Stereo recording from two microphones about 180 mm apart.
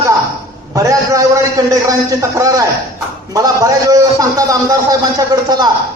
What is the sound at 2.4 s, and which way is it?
A man's voice, 20° right (ahead or behind).